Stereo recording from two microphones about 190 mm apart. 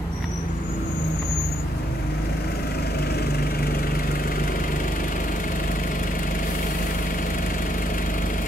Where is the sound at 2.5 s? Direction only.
55° left (ahead or behind).